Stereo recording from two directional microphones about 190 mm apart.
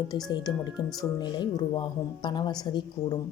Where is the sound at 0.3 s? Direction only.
20° left (ahead or behind).